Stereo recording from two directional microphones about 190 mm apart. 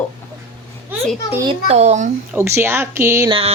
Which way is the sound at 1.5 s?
35° right (ahead or behind).